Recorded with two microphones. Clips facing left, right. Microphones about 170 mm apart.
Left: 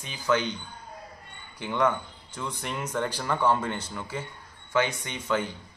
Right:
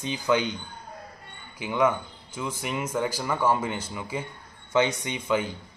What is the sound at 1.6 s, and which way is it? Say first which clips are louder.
A man's voice: right 2 dB; 10° right (ahead or behind).